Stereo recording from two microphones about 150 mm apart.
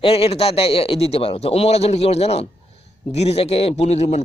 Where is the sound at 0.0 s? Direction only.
40° left (ahead or behind).